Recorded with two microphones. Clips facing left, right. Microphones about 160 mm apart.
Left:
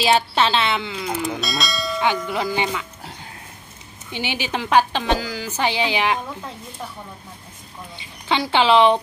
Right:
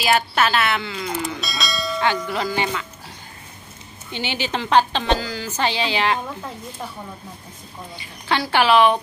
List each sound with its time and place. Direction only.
0.0 s speech: 25° left (ahead or behind)
1.1 s speech: centre (ahead or behind)
2.2 s a woman's voice: 15° left (ahead or behind)
4.1 s a woman's voice: 10° left (ahead or behind)
8.3 s speech: 20° left (ahead or behind)